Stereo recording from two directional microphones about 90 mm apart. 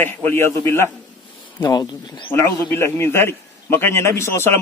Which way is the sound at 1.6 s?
50° left (ahead or behind).